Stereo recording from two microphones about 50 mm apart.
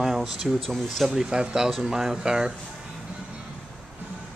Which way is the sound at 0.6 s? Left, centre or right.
Centre.